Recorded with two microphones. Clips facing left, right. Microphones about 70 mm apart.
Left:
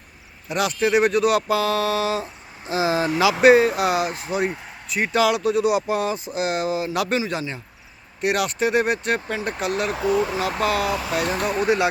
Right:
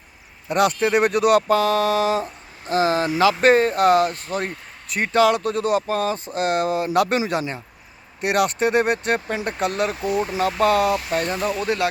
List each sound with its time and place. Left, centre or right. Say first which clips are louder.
0.4 s speech: right 3 dB; centre
2.2 s speech: right 2 dB; centre
11.3 s speech: even; left
11.6 s speech: left 4 dB; left